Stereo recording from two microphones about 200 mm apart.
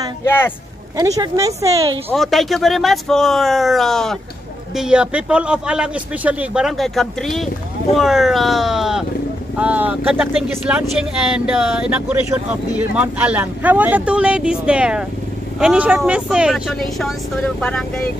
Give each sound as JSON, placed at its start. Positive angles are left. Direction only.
{"t": 0.2, "sound": "speech", "side_deg": 10}
{"t": 0.9, "sound": "speech", "side_deg": -15}
{"t": 2.1, "sound": "a man's voice", "side_deg": 0}